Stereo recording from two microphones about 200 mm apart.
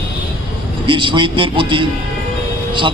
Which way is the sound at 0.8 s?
25° right (ahead or behind).